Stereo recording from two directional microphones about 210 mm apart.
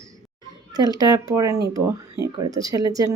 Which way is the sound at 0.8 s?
20° right (ahead or behind).